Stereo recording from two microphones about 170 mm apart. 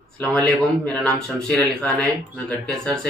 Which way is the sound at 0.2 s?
5° left (ahead or behind).